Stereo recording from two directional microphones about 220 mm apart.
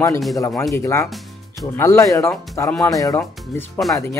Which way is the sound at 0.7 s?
15° left (ahead or behind).